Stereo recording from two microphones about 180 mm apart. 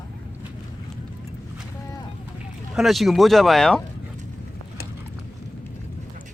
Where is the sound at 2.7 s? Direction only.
Centre (ahead or behind).